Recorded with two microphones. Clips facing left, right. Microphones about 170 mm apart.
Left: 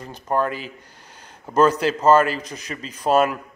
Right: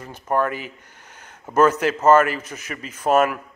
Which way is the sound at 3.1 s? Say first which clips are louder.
Even; 30° left (ahead or behind).